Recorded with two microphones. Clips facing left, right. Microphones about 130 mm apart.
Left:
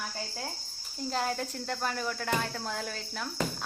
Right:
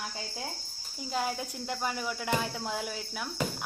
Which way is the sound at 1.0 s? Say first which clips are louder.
Left 1 dB; 5° right (ahead or behind).